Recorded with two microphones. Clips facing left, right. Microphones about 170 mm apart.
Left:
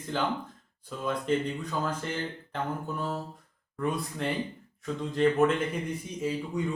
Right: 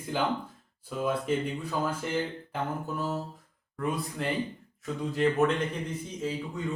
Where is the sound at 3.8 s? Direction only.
Centre (ahead or behind).